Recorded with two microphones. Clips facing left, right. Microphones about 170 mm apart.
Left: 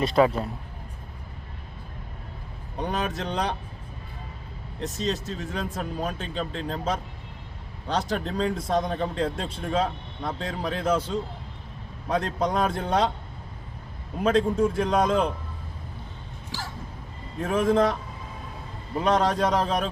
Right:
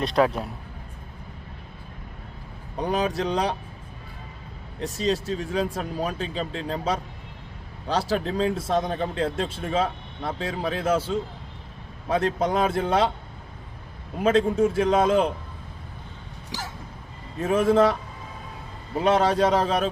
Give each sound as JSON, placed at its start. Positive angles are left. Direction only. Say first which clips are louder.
{"t": 0.0, "sound": "speech", "louder": "left 1 dB", "side_deg": 0}
{"t": 2.9, "sound": "speech", "louder": "right 5 dB", "side_deg": -10}
{"t": 4.8, "sound": "speech", "louder": "right 3 dB", "side_deg": -10}
{"t": 8.1, "sound": "speech", "louder": "right 3 dB", "side_deg": -5}
{"t": 14.2, "sound": "speech", "louder": "right 2 dB", "side_deg": -5}
{"t": 16.5, "sound": "a sound", "louder": "right 1 dB", "side_deg": -15}
{"t": 17.4, "sound": "speech", "louder": "right 3 dB", "side_deg": -5}
{"t": 18.9, "sound": "speech", "louder": "right 2 dB", "side_deg": -5}